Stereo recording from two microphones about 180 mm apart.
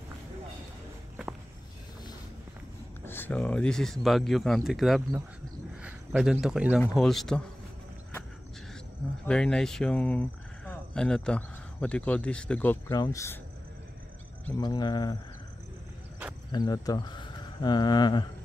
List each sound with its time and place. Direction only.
3.1 s speech: 10° left (ahead or behind)
5.8 s a sound: 5° right (ahead or behind)
6.4 s speech: 5° right (ahead or behind)
9.2 s speech: 5° left (ahead or behind)
14.6 s cricket: 25° left (ahead or behind)
16.5 s speech: 20° left (ahead or behind)